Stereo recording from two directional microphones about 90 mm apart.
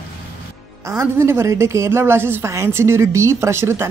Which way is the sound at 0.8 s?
35° right (ahead or behind).